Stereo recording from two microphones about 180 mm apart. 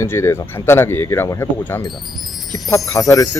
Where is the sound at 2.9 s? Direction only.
20° left (ahead or behind).